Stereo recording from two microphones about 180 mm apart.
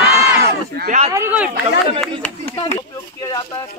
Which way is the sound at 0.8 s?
45° right (ahead or behind).